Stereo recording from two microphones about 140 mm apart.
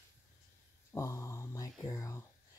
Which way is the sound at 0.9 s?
20° left (ahead or behind).